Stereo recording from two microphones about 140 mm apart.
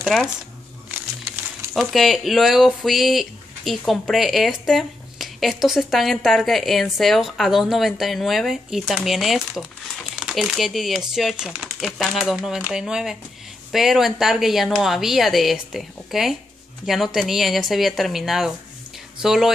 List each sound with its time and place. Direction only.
0.0 s speech: centre (ahead or behind)
1.7 s speech: centre (ahead or behind)